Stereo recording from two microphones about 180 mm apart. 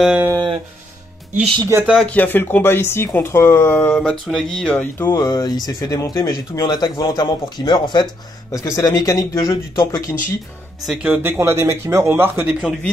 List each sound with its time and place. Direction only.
0.0 s a sound: 5° right (ahead or behind)
0.3 s a sound: 25° right (ahead or behind)
1.6 s speech: 15° right (ahead or behind)
2.0 s speech: 10° left (ahead or behind)
4.9 s speech: 15° left (ahead or behind)
10.9 s speech: 5° right (ahead or behind)